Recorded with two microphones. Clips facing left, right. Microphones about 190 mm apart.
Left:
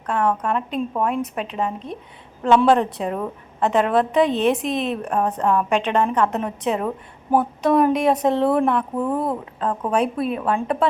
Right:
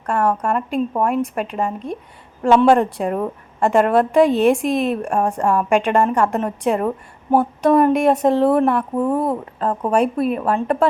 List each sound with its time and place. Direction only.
0.0 s a woman's voice: 10° right (ahead or behind)